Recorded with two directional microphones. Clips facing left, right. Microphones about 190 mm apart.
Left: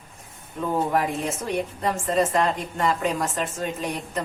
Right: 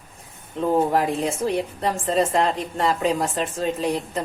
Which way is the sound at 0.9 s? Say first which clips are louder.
Right 3 dB; 30° right (ahead or behind).